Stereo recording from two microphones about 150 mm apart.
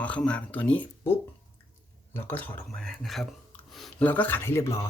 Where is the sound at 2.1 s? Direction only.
15° left (ahead or behind).